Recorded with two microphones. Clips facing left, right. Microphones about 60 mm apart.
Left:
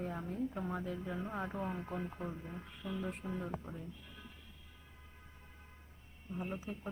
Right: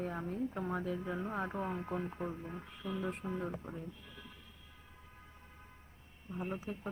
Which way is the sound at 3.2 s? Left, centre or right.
Right.